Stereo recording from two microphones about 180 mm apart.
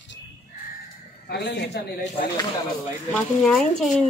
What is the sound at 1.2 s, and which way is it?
Speech, 70° left (ahead or behind).